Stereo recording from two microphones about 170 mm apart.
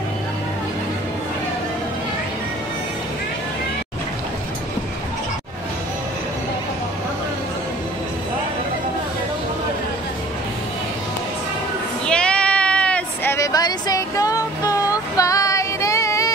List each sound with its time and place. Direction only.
12.1 s sheep: 5° left (ahead or behind)